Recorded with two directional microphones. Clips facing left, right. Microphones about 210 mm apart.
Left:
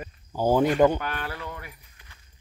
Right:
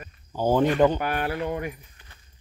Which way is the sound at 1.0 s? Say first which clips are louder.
Right 7 dB; 15° right (ahead or behind).